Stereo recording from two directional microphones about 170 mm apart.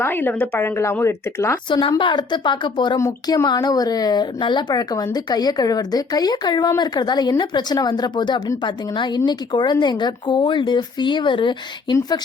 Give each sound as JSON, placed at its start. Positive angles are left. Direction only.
{"t": 0.0, "sound": "speech", "side_deg": 10}
{"t": 1.7, "sound": "a woman's voice", "side_deg": 30}